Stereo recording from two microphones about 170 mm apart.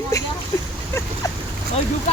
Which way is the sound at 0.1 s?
20° left (ahead or behind).